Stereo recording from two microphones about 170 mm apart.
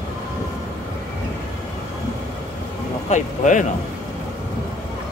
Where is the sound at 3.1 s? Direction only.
45° left (ahead or behind).